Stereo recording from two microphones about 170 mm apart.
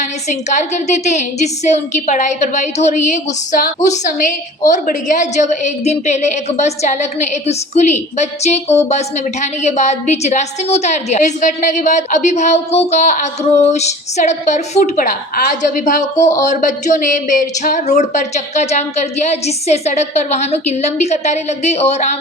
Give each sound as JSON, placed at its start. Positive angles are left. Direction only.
{"t": 0.0, "sound": "a woman's voice", "side_deg": 45}